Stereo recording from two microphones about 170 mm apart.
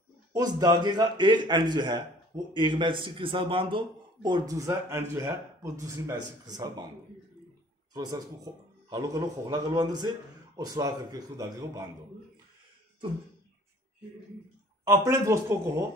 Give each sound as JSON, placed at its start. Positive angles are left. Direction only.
{"t": 0.3, "sound": "a man's voice", "side_deg": -20}
{"t": 7.9, "sound": "a man's voice", "side_deg": -25}
{"t": 14.9, "sound": "speech", "side_deg": -15}